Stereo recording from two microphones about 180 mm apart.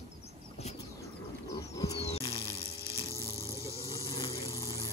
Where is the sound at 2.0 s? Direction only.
35° left (ahead or behind).